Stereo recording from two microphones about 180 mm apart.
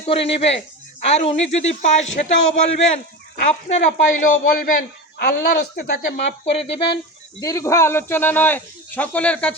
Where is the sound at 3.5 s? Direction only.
40° left (ahead or behind).